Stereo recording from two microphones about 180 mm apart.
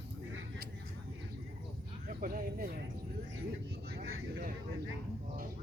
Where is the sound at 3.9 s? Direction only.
60° right (ahead or behind).